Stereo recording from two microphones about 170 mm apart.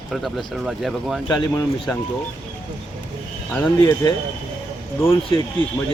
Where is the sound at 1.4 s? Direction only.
30° left (ahead or behind).